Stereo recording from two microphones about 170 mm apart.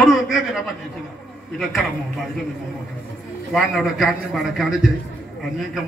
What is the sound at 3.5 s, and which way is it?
A man's voice, centre (ahead or behind).